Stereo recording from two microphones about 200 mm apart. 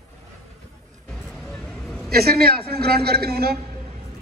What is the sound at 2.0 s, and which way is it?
A man's voice, 50° right (ahead or behind).